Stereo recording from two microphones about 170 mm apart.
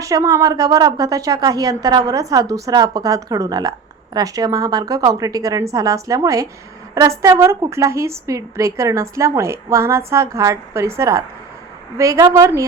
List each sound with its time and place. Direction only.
0.0 s a woman's voice: 20° right (ahead or behind)